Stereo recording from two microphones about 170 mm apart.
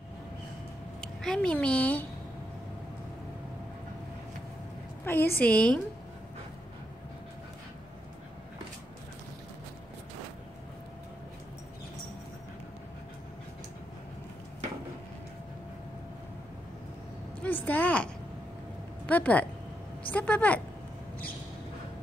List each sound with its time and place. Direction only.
1.0 s a woman's voice: 5° left (ahead or behind)
5.0 s a woman's voice: 15° left (ahead or behind)
17.4 s a sound: 10° left (ahead or behind)
20.1 s a woman's voice: 10° left (ahead or behind)